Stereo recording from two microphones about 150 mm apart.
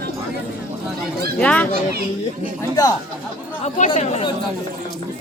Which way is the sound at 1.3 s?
10° left (ahead or behind).